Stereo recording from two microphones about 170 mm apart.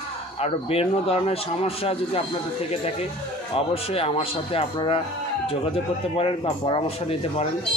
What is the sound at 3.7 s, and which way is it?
Speech, 35° left (ahead or behind).